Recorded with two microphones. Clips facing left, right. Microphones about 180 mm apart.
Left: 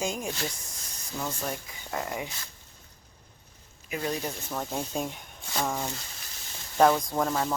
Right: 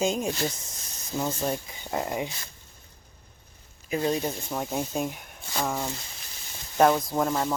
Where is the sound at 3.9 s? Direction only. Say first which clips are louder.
Right 5 dB; 30° right (ahead or behind).